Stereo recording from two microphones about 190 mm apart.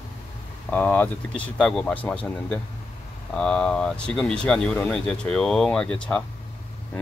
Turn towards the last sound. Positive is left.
turn(degrees=5)  # may be behind; listen again after turning